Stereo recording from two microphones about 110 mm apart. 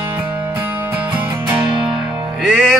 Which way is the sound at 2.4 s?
Centre (ahead or behind).